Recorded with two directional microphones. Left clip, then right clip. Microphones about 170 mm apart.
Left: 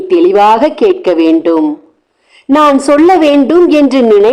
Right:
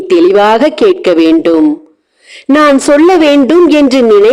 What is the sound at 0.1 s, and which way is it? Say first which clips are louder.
A woman's voice: even; 25° right (ahead or behind).